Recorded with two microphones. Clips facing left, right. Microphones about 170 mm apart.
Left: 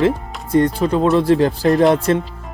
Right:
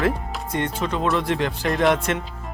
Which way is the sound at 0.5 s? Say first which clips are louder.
Left 10 dB; 35° left (ahead or behind).